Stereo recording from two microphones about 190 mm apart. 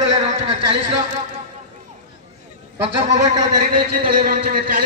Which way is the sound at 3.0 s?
40° right (ahead or behind).